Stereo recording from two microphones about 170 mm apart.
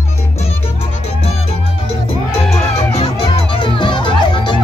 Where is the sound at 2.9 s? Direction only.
35° left (ahead or behind).